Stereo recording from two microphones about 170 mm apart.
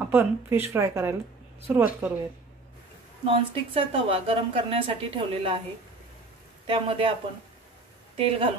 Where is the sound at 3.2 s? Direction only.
30° right (ahead or behind).